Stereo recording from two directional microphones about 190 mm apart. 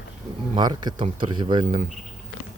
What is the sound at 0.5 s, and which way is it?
Speech, 25° right (ahead or behind).